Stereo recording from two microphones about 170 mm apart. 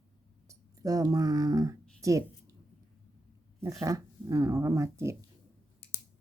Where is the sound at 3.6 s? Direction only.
20° right (ahead or behind).